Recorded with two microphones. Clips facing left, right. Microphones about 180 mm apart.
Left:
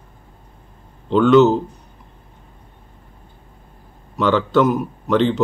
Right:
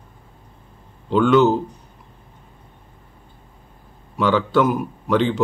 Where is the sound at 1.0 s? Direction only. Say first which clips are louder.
Left 3 dB; 10° right (ahead or behind).